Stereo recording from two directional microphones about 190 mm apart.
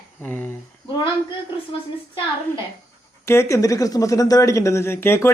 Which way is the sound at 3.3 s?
15° left (ahead or behind).